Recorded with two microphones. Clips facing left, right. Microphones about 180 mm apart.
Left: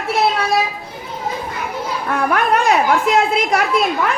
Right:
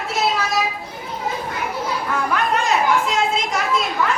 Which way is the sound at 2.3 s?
60° left (ahead or behind).